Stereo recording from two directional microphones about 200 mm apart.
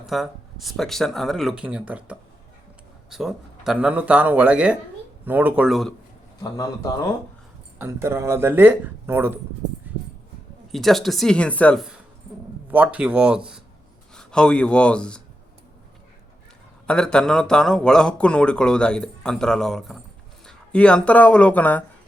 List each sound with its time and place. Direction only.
0.0 s speech: centre (ahead or behind)
6.4 s speech: 15° left (ahead or behind)
7.8 s speech: 15° right (ahead or behind)
9.6 s a sound: 60° right (ahead or behind)
10.7 s speech: centre (ahead or behind)
14.2 s speech: 5° left (ahead or behind)
16.8 s speech: 5° left (ahead or behind)